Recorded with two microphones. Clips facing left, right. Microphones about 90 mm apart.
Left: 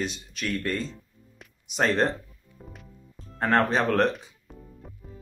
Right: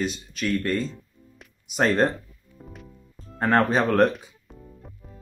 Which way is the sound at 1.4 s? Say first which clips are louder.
Right 3 dB; centre (ahead or behind).